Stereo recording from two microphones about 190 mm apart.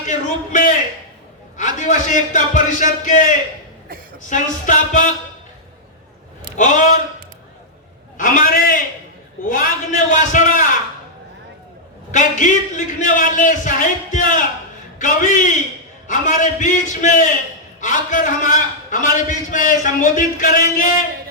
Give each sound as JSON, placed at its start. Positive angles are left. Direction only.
{"t": 0.1, "sound": "a sound", "side_deg": 40}
{"t": 1.5, "sound": "a man's voice", "side_deg": 40}
{"t": 6.6, "sound": "a man's voice", "side_deg": 40}
{"t": 8.2, "sound": "a man's voice", "side_deg": 45}
{"t": 12.1, "sound": "a man's voice", "side_deg": 40}